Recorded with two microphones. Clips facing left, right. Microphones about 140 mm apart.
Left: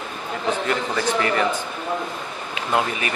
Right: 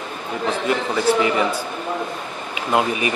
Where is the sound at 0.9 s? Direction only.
10° right (ahead or behind).